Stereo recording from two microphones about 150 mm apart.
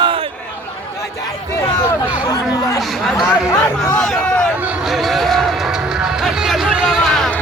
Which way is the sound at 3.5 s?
20° left (ahead or behind).